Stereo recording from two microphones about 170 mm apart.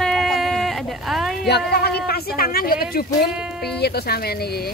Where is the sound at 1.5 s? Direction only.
75° left (ahead or behind).